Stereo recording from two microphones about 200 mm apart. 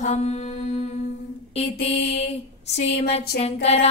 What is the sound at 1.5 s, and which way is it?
Music, 30° left (ahead or behind).